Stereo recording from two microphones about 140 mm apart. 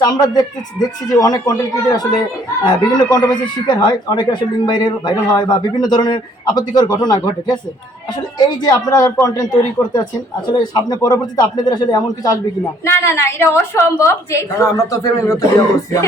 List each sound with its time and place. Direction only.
0.0 s speech: 30° left (ahead or behind)